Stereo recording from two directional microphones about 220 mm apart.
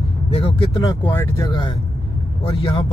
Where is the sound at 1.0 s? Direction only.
10° left (ahead or behind).